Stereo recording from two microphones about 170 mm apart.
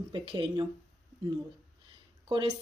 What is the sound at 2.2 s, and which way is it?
Speech, 25° right (ahead or behind).